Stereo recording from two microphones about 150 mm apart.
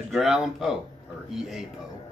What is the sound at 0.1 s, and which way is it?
Speech, 5° right (ahead or behind).